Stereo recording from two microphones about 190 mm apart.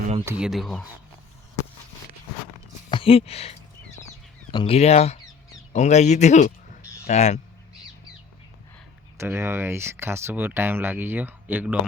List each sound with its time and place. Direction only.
0.3 s speech: 5° right (ahead or behind)
2.9 s speech: 30° left (ahead or behind)
4.5 s speech: 30° left (ahead or behind)
9.1 s speech: 15° right (ahead or behind)